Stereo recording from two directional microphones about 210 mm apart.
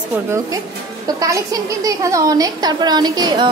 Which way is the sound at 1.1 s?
15° right (ahead or behind).